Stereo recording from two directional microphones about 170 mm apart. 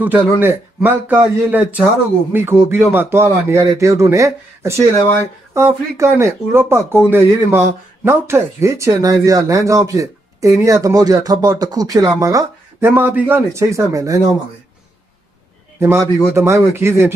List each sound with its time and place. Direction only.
0.0 s a man's voice: 10° right (ahead or behind)
15.8 s a man's voice: 15° right (ahead or behind)